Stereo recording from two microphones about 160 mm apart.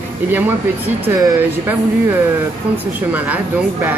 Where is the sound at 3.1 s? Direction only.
10° right (ahead or behind).